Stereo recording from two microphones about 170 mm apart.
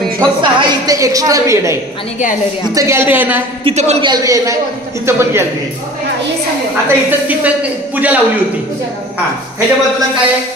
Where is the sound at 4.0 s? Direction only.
25° right (ahead or behind).